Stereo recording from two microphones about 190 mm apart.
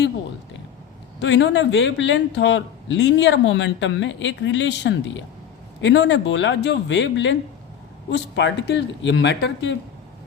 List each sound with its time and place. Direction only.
1.2 s a man's voice: 70° left (ahead or behind)